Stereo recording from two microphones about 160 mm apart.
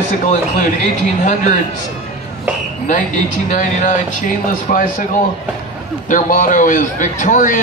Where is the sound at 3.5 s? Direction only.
55° left (ahead or behind).